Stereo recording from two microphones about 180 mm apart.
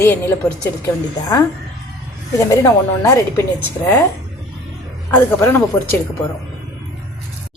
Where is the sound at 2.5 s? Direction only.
15° left (ahead or behind).